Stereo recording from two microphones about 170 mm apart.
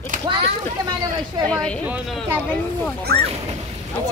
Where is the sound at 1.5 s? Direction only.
5° left (ahead or behind).